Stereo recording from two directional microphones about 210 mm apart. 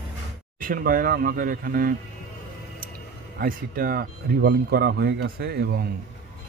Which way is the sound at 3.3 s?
45° right (ahead or behind).